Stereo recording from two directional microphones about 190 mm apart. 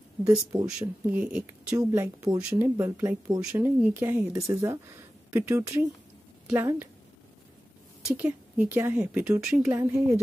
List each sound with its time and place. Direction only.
0.2 s speech: 20° right (ahead or behind)
0.7 s speech: 5° right (ahead or behind)
8.1 s speech: 10° right (ahead or behind)